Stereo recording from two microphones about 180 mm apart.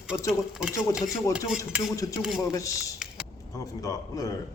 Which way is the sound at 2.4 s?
15° left (ahead or behind).